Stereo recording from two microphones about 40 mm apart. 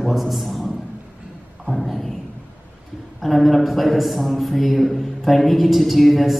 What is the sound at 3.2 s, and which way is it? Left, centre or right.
A man's voice, centre.